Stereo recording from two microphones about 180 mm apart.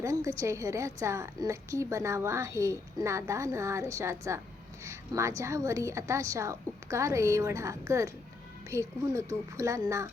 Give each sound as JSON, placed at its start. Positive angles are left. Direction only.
{"t": 0.0, "sound": "a woman's voice", "side_deg": -15}